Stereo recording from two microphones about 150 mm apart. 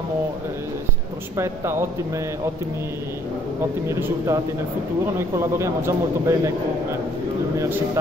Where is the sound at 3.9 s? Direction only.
20° right (ahead or behind).